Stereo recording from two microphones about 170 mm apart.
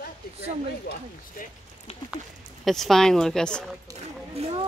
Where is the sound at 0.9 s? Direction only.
70° left (ahead or behind).